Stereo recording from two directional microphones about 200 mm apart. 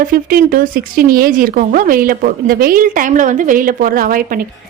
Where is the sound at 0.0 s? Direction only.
45° right (ahead or behind).